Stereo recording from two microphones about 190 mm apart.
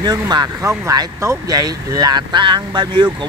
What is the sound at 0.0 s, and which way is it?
Speech, 20° right (ahead or behind).